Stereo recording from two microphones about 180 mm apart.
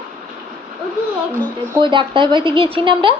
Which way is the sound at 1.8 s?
25° right (ahead or behind).